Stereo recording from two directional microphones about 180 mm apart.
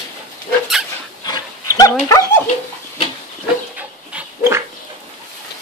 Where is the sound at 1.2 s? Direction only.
20° left (ahead or behind).